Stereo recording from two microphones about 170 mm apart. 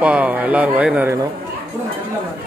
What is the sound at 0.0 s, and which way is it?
Speech, 10° right (ahead or behind).